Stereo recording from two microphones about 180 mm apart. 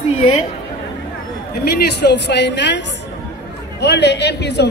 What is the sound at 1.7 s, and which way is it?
A man's voice, 70° left (ahead or behind).